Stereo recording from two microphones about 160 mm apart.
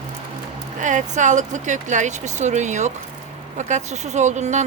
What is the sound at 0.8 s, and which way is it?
Speech, 50° right (ahead or behind).